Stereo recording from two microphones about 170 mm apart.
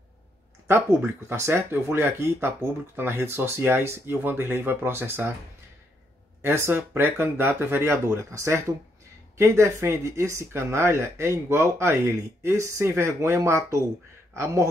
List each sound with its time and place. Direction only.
0.7 s speech: 15° right (ahead or behind)
6.4 s a man's voice: 15° right (ahead or behind)